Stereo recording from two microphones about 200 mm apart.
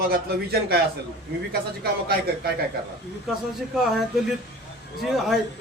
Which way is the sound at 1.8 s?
50° right (ahead or behind).